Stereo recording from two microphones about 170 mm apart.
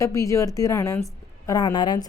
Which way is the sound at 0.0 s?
20° left (ahead or behind).